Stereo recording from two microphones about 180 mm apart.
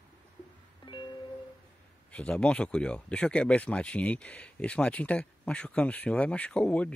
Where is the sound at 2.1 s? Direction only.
5° left (ahead or behind).